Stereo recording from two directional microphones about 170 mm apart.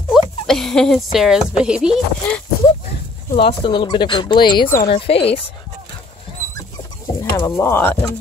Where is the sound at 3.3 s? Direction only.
35° left (ahead or behind).